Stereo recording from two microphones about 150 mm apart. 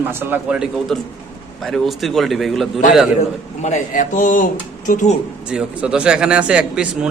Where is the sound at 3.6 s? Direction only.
55° left (ahead or behind).